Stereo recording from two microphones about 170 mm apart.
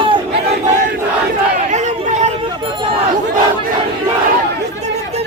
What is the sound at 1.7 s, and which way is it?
Chatter, 45° right (ahead or behind).